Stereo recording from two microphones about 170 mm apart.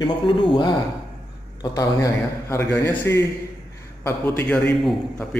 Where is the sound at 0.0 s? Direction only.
30° left (ahead or behind).